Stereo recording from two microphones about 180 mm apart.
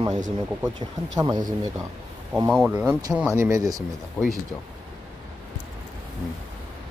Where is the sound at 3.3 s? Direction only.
15° right (ahead or behind).